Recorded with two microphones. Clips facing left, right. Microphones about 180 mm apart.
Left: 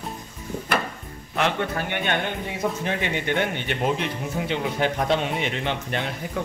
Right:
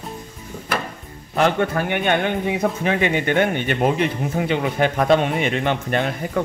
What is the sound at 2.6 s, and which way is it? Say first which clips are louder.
A man's voice: right 3 dB; 60° right (ahead or behind).